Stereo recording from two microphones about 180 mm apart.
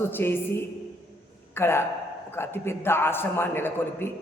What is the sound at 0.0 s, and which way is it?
Speech, 10° left (ahead or behind).